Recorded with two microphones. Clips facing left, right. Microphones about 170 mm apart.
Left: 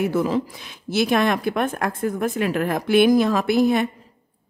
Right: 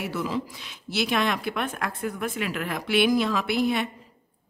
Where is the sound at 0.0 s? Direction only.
50° left (ahead or behind).